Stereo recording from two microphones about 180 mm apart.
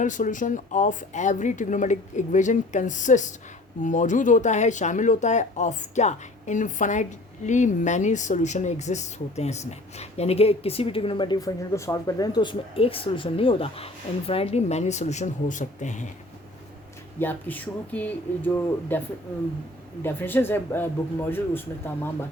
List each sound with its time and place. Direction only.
0.0 s speech: 45° left (ahead or behind)
17.2 s speech: 10° left (ahead or behind)